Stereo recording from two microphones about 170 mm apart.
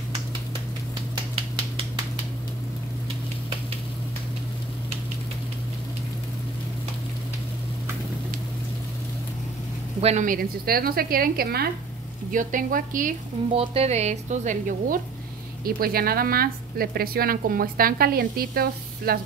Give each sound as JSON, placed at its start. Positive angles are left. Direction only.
{"t": 9.9, "sound": "a woman's voice", "side_deg": -40}
{"t": 12.3, "sound": "speech", "side_deg": -50}
{"t": 13.6, "sound": "speech", "side_deg": -35}
{"t": 15.6, "sound": "a woman's voice", "side_deg": -60}